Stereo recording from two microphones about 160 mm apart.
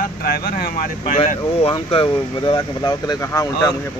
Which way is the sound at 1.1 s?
40° left (ahead or behind).